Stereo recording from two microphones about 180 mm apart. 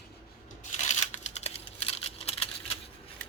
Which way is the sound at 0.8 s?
40° left (ahead or behind).